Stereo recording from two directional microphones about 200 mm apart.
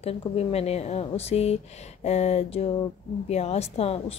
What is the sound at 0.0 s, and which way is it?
A woman's voice, 30° left (ahead or behind).